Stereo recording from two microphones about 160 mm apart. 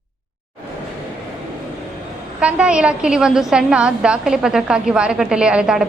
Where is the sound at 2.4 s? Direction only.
5° right (ahead or behind).